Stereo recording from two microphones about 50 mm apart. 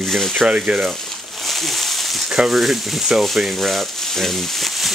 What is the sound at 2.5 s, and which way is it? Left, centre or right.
Speech, centre.